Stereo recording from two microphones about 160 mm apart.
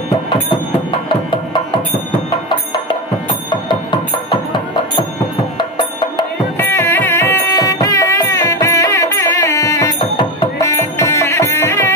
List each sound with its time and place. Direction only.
1.0 s music: 30° left (ahead or behind)
3.4 s music: 30° left (ahead or behind)
6.6 s music: 15° left (ahead or behind)